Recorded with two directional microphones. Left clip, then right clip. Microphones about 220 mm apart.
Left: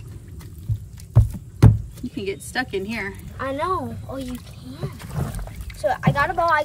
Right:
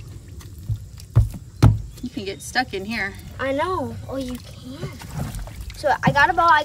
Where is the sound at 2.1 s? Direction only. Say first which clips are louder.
Right 2 dB; 5° right (ahead or behind).